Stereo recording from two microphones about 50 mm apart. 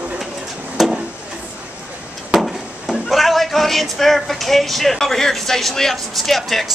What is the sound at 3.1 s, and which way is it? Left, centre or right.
Speech, centre.